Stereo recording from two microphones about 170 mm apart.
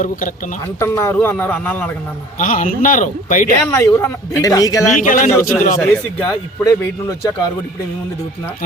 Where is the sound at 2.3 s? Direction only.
50° left (ahead or behind).